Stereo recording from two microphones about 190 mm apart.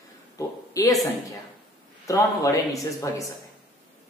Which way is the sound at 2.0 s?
15° left (ahead or behind).